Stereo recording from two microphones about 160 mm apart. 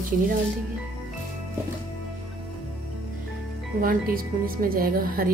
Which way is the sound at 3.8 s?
65° right (ahead or behind).